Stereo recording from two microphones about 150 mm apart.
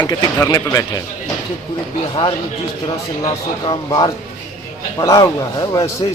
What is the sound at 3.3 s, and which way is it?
Speech, 30° left (ahead or behind).